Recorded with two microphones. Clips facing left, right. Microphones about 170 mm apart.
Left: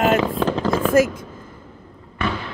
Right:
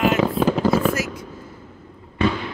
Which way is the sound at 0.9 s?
50° left (ahead or behind).